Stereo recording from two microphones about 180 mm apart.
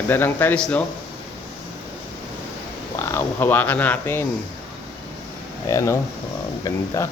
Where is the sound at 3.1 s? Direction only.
10° left (ahead or behind).